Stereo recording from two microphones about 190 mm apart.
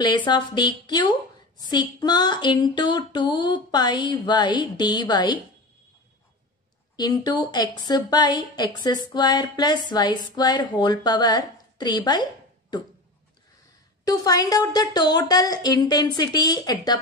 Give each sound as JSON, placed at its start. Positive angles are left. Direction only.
{"t": 0.0, "sound": "a woman's voice", "side_deg": 25}
{"t": 7.0, "sound": "a woman's voice", "side_deg": 20}
{"t": 14.0, "sound": "a woman's voice", "side_deg": 20}